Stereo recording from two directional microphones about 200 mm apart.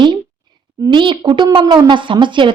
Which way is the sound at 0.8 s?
25° right (ahead or behind).